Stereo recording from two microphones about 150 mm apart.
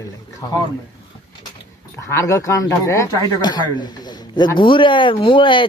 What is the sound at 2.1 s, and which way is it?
Speech, 20° left (ahead or behind).